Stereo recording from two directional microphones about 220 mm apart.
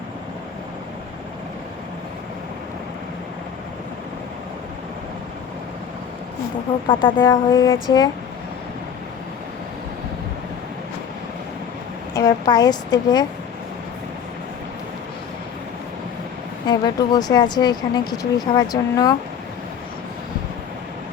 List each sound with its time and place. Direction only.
6.8 s speech: 25° left (ahead or behind)
7.2 s speech: 10° left (ahead or behind)
12.1 s speech: 15° left (ahead or behind)
16.6 s speech: 20° left (ahead or behind)